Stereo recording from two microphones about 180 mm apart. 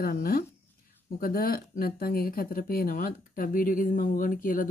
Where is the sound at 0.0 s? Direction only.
55° left (ahead or behind).